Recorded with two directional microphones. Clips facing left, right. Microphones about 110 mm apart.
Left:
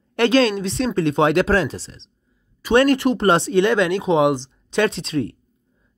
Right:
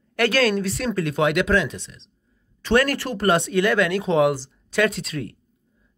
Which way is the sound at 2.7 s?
25° left (ahead or behind).